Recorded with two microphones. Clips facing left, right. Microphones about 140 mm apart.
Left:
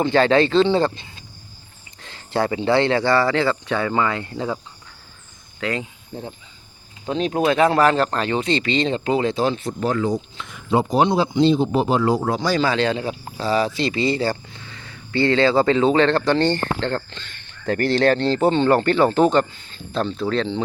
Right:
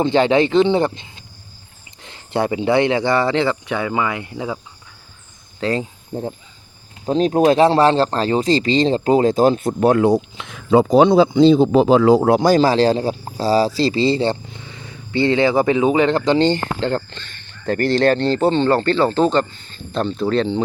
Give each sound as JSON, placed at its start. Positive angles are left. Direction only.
{"t": 0.0, "sound": "speech", "side_deg": -20}
{"t": 5.5, "sound": "speech", "side_deg": -35}
{"t": 11.9, "sound": "speech", "side_deg": -90}
{"t": 17.7, "sound": "speech", "side_deg": 5}